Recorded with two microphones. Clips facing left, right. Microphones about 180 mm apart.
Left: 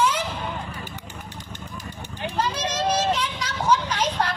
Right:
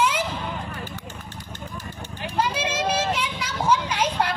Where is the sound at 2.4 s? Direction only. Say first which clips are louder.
Right 2 dB; 10° right (ahead or behind).